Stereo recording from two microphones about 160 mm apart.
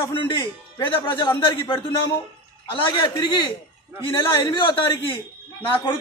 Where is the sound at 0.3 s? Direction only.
30° left (ahead or behind).